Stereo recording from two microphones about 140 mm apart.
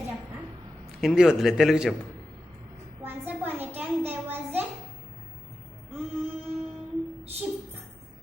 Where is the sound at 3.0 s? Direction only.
15° right (ahead or behind).